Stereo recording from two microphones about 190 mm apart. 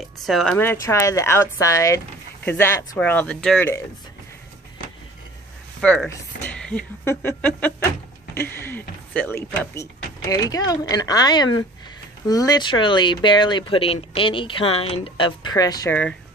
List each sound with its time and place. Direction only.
0.2 s a woman's voice: centre (ahead or behind)
5.8 s speech: 10° left (ahead or behind)
15.9 s a woman's voice: 5° left (ahead or behind)